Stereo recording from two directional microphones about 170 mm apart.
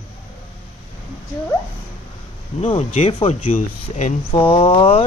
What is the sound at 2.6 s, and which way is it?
Speech, 35° left (ahead or behind).